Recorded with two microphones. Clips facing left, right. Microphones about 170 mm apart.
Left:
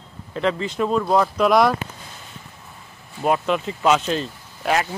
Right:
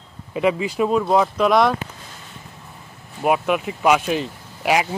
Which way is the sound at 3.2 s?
10° right (ahead or behind).